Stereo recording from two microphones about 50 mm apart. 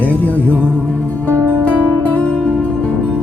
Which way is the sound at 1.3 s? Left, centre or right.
Left.